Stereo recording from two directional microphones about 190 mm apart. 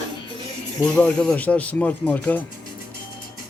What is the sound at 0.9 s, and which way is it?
Speech, 5° left (ahead or behind).